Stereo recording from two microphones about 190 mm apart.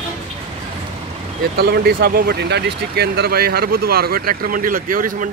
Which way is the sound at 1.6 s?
55° right (ahead or behind).